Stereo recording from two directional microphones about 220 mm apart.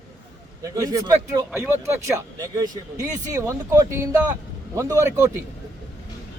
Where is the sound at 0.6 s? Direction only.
15° right (ahead or behind).